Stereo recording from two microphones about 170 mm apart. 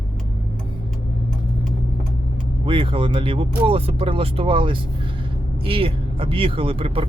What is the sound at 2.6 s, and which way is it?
Speech, 30° right (ahead or behind).